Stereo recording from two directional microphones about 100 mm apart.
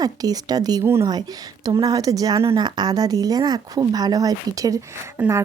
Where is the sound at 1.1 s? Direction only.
40° right (ahead or behind).